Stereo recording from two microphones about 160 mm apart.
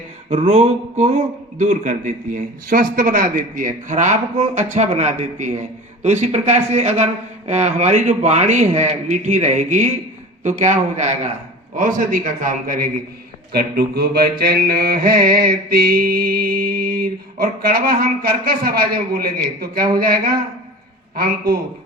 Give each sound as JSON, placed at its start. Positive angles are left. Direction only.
{"t": 0.3, "sound": "a man's voice", "side_deg": -40}
{"t": 13.5, "sound": "mantra", "side_deg": -75}